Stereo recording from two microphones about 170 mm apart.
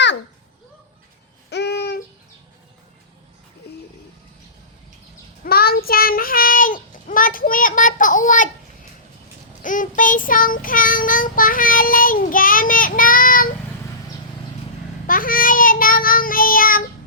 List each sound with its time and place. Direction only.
1.5 s babbling: 80° left
5.5 s child singing: 65° left (ahead or behind)
9.6 s child singing: 50° left (ahead or behind)
15.0 s child singing: 55° left (ahead or behind)